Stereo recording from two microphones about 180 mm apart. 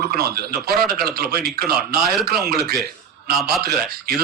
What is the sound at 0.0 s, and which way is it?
Speech, 60° right (ahead or behind).